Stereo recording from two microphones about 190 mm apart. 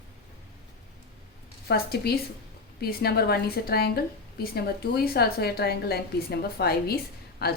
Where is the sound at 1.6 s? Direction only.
55° left (ahead or behind).